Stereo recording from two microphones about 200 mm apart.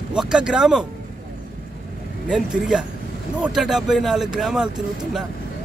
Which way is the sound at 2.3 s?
5° right (ahead or behind).